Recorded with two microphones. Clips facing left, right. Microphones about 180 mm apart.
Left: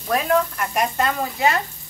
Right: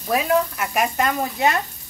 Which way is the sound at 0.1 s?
5° right (ahead or behind).